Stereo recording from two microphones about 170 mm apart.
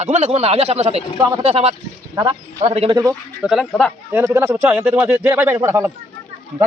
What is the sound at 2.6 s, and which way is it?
Speech, 40° right (ahead or behind).